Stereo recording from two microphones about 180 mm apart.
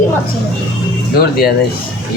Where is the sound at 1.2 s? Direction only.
60° left (ahead or behind).